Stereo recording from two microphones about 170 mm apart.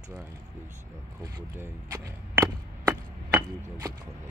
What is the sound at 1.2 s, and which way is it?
Speech, 20° right (ahead or behind).